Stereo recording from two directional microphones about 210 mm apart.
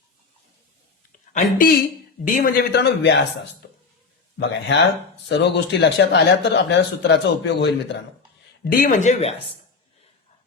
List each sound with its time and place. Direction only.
1.3 s a man's voice: 40° left (ahead or behind); by 3.2 s 55° left (ahead or behind)
4.7 s speech: 60° left (ahead or behind)
8.6 s speech: 45° left (ahead or behind)